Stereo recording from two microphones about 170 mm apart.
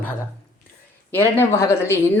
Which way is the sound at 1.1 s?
15° left (ahead or behind).